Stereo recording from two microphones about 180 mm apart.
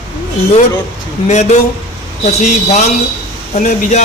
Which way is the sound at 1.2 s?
40° left (ahead or behind).